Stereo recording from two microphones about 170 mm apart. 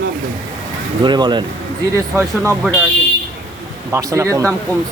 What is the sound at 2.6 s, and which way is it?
Speech, 10° right (ahead or behind).